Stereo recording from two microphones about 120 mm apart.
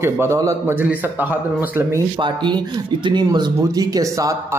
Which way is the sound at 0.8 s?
15° right (ahead or behind).